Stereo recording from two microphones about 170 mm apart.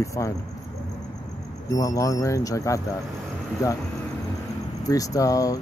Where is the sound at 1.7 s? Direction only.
20° left (ahead or behind).